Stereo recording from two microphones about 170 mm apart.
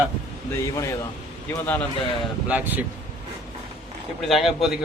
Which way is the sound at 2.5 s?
10° right (ahead or behind).